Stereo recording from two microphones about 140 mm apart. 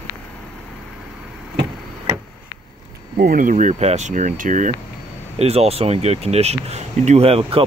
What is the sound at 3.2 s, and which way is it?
Speech, 80° right.